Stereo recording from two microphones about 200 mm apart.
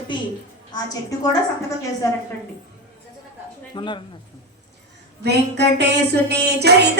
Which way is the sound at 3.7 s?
25° left (ahead or behind).